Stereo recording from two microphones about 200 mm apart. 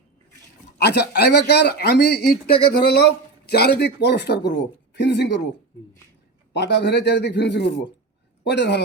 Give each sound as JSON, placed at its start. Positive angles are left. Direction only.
{"t": 0.8, "sound": "speech", "side_deg": 55}
{"t": 6.5, "sound": "speech", "side_deg": 60}